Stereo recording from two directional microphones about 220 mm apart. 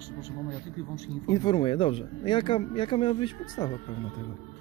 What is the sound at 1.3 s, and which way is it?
Speech, 20° left (ahead or behind).